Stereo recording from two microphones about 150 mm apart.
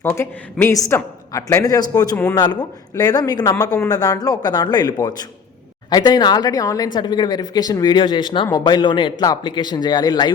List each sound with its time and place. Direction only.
0.0 s a woman's voice: 15° left (ahead or behind)